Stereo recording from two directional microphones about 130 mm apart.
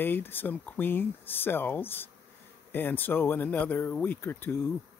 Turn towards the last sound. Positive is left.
turn(degrees=15)  # may be behind; listen again after turning